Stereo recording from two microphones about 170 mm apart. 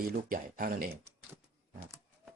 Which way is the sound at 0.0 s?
60° right (ahead or behind).